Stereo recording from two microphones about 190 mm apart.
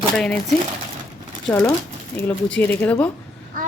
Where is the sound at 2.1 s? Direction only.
10° left (ahead or behind).